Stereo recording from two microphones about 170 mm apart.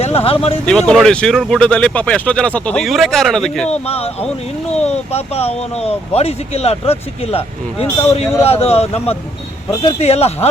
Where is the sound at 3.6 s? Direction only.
40° left (ahead or behind).